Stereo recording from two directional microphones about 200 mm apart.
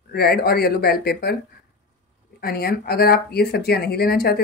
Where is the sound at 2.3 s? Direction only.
50° left (ahead or behind).